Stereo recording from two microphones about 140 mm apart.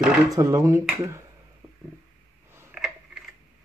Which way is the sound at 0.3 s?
25° right (ahead or behind).